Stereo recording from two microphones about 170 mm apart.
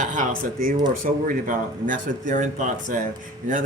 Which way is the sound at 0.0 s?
50° right (ahead or behind).